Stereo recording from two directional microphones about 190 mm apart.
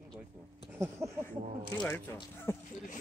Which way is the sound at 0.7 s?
15° right (ahead or behind).